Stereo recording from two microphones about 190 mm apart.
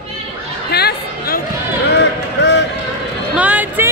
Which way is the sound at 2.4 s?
65° left (ahead or behind).